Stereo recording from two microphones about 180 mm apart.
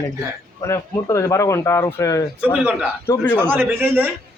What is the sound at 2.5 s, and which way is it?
Speech, 5° right (ahead or behind).